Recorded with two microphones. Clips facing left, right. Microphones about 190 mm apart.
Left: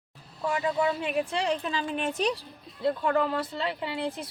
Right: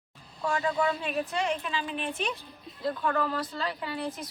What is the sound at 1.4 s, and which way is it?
A woman's voice, 35° left (ahead or behind).